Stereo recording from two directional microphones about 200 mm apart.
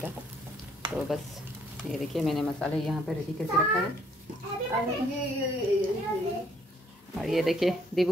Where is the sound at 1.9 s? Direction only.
Centre (ahead or behind).